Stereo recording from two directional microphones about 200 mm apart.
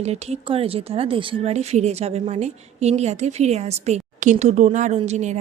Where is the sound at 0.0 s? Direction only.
30° right (ahead or behind).